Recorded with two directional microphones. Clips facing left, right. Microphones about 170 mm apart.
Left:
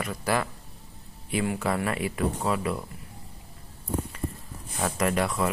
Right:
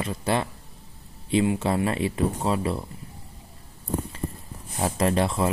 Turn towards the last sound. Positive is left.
turn(degrees=-25)  # may be behind; listen again after turning